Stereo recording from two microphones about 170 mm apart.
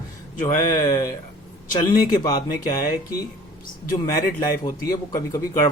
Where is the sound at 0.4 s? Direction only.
20° left (ahead or behind).